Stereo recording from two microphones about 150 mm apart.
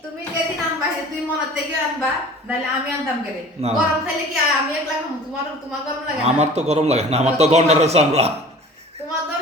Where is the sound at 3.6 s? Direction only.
45° right (ahead or behind).